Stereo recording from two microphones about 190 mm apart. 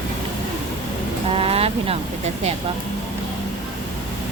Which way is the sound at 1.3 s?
30° right (ahead or behind).